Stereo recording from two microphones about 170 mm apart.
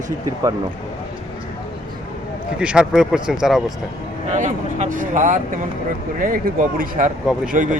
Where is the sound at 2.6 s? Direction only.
5° right (ahead or behind).